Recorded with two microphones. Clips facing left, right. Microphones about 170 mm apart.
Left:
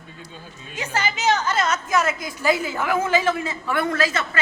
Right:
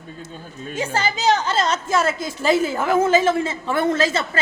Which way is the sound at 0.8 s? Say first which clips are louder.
Right 3 dB; 30° right (ahead or behind).